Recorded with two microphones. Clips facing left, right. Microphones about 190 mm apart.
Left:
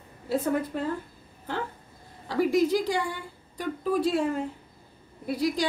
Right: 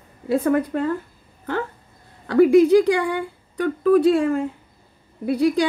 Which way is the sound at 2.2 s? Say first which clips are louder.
Right 10 dB; 65° right (ahead or behind).